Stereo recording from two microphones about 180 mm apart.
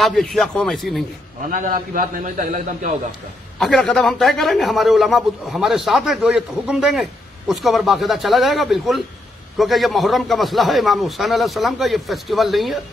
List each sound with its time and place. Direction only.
0.0 s a man's voice: centre (ahead or behind)
1.5 s a man's voice: 50° right (ahead or behind)
3.5 s a man's voice: centre (ahead or behind)